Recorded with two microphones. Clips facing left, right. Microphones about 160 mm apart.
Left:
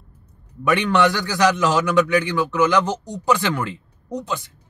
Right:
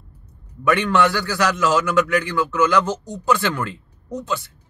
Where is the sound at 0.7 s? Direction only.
20° left (ahead or behind).